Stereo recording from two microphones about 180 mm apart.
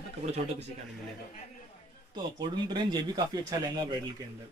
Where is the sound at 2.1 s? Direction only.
25° right (ahead or behind).